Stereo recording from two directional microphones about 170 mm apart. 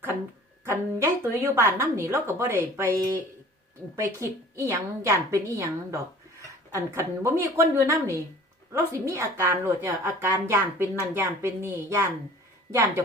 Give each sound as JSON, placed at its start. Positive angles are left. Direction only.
{"t": 0.6, "sound": "a woman's voice", "side_deg": -15}